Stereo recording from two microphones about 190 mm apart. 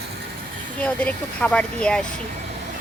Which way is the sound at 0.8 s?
5° left (ahead or behind).